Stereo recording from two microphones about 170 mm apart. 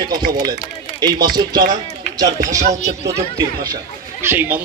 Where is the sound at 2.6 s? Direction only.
45° right (ahead or behind).